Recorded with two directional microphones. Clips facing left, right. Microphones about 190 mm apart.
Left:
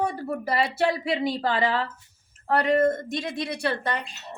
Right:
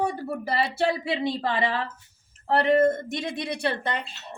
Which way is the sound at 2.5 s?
25° right (ahead or behind).